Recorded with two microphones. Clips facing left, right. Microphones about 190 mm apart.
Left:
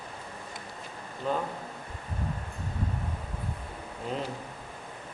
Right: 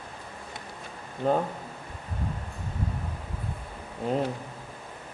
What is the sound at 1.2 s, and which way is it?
Speech, 45° right (ahead or behind).